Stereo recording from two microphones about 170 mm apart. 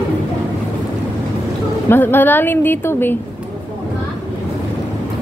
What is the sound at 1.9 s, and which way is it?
A woman's voice, 10° left (ahead or behind).